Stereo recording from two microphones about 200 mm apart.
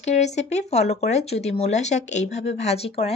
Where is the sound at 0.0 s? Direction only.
35° left (ahead or behind).